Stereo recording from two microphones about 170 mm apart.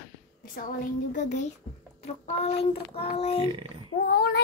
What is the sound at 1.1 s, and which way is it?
A child's voice, 45° left (ahead or behind).